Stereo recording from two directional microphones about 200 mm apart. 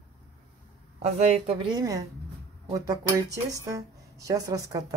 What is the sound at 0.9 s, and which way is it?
Speech, 30° right (ahead or behind).